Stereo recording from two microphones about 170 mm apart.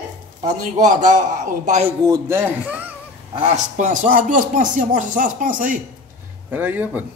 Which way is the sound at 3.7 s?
50° right (ahead or behind).